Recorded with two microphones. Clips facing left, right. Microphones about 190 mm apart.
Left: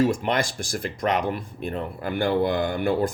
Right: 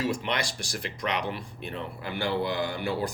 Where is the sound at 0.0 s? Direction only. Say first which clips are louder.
Left 7 dB; 50° left (ahead or behind).